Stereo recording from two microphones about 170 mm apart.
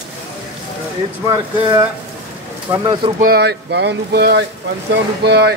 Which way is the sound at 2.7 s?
25° right (ahead or behind).